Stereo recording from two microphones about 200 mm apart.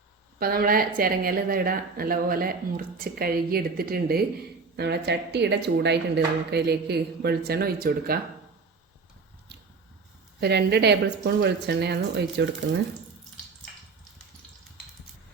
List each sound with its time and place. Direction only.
0.3 s speech: 50° right (ahead or behind)
10.4 s speech: 55° right (ahead or behind)